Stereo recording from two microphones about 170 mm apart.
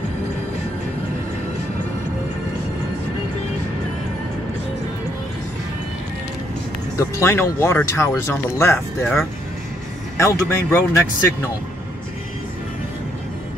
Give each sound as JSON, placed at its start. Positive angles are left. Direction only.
{"t": 7.0, "sound": "speech", "side_deg": 15}
{"t": 8.7, "sound": "speech", "side_deg": 0}
{"t": 10.1, "sound": "speech", "side_deg": 20}